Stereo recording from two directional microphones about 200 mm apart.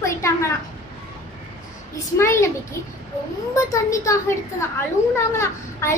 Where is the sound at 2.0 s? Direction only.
15° left (ahead or behind).